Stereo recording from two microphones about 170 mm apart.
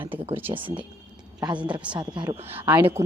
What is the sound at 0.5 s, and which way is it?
Speech, 30° right (ahead or behind).